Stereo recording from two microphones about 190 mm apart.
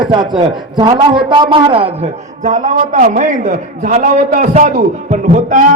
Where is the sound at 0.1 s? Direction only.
25° right (ahead or behind); by 4.7 s 40° right (ahead or behind).